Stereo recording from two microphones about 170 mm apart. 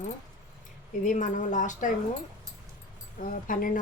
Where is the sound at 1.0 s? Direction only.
45° left (ahead or behind).